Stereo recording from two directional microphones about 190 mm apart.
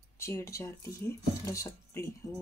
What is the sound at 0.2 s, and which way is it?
Speech, 15° left (ahead or behind).